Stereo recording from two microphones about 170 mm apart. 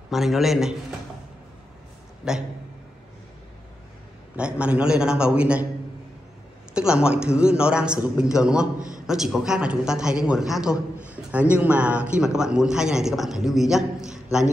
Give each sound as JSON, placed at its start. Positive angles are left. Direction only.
{"t": 0.1, "sound": "a man's voice", "side_deg": 0}
{"t": 2.2, "sound": "a man's voice", "side_deg": -5}
{"t": 4.4, "sound": "a man's voice", "side_deg": -5}
{"t": 6.7, "sound": "a man's voice", "side_deg": -5}
{"t": 8.7, "sound": "a man's voice", "side_deg": -50}
{"t": 9.0, "sound": "a man's voice", "side_deg": -5}